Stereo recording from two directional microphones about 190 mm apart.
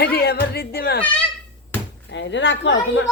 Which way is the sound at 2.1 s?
70° left (ahead or behind).